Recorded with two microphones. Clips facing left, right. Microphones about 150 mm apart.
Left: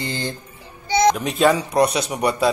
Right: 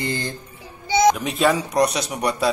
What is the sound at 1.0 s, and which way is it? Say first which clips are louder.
Speech: left 2 dB; centre (ahead or behind).